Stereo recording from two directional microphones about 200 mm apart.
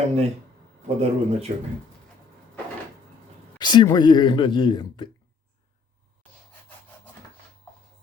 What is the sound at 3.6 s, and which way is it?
Speech, 20° left (ahead or behind).